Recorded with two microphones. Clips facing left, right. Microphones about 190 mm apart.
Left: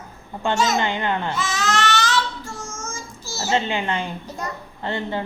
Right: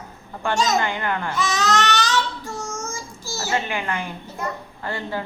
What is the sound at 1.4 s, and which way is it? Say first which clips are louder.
Baby cry: right 2 dB; 15° right (ahead or behind).